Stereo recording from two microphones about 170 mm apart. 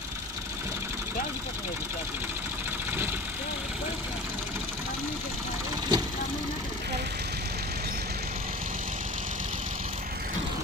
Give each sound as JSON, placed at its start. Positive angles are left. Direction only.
{"t": 5.9, "sound": "vehicle", "side_deg": -25}